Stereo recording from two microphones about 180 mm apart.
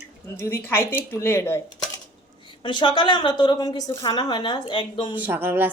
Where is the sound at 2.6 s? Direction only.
25° left (ahead or behind).